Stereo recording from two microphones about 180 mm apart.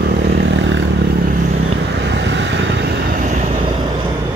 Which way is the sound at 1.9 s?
80° right.